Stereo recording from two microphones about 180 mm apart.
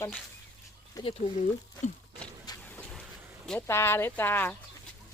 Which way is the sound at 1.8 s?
40° left (ahead or behind).